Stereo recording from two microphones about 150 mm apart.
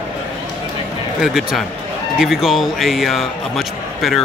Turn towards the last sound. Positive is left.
turn(degrees=0)  # may be behind; listen again after turning